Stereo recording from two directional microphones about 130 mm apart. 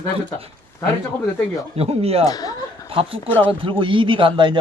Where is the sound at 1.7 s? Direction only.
50° right (ahead or behind).